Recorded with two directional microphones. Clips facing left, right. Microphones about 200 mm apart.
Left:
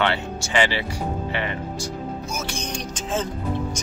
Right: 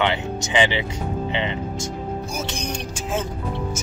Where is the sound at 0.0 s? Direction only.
15° right (ahead or behind).